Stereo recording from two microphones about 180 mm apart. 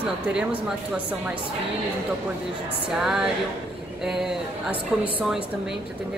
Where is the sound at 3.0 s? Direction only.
5° right (ahead or behind).